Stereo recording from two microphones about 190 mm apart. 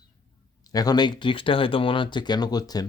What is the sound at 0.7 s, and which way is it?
Speech, 20° left (ahead or behind).